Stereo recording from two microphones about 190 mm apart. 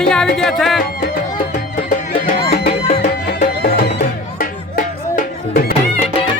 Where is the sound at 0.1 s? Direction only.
5° left (ahead or behind).